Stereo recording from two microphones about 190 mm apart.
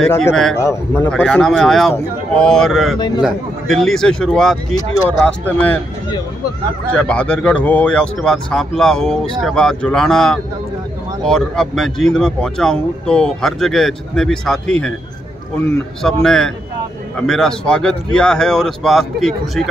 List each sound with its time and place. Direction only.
0.3 s speech: 5° left (ahead or behind)
0.6 s a man's voice: 15° left (ahead or behind)
1.1 s a man's voice: 5° left (ahead or behind)
6.9 s speech: 5° left (ahead or behind)
16.0 s speech: centre (ahead or behind)